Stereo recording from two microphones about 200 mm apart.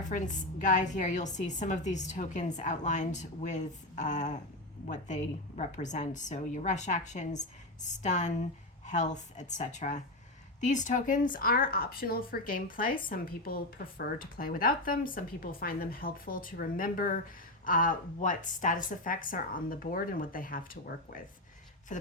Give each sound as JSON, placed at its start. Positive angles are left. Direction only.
{"t": 0.1, "sound": "a woman's voice", "side_deg": 40}